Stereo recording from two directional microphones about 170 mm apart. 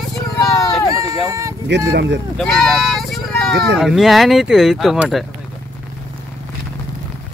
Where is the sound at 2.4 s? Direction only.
Centre (ahead or behind).